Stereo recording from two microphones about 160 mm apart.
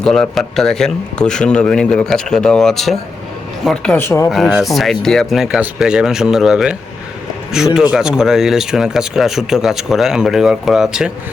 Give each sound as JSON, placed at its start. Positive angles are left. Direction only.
{"t": 0.0, "sound": "speech", "side_deg": 5}
{"t": 3.9, "sound": "speech", "side_deg": 15}
{"t": 4.3, "sound": "speech", "side_deg": 0}